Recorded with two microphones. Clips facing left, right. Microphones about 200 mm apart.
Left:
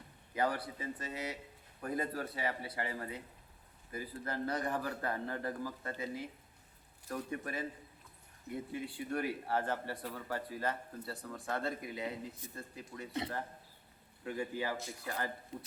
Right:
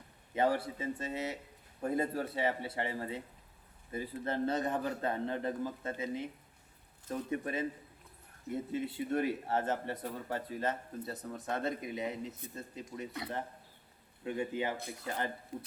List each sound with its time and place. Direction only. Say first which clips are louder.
0.3 s a man's voice: right 4 dB; 25° right (ahead or behind)
14.3 s a man's voice: right 3 dB; 20° right (ahead or behind)